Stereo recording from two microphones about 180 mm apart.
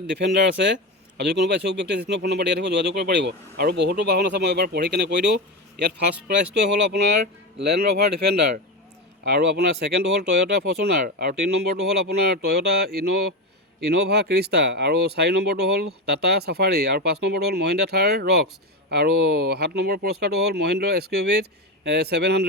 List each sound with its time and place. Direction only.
0.2 s speech: 70° right (ahead or behind)
9.2 s speech: 65° right (ahead or behind)